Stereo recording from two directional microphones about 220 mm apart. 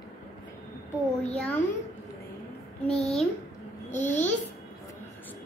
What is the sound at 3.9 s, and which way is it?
Speech, 35° left (ahead or behind).